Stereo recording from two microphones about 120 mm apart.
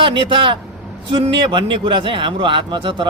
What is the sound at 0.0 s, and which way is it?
A man's voice, 45° right (ahead or behind).